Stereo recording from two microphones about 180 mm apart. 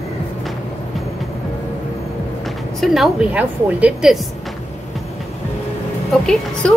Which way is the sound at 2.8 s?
Centre (ahead or behind).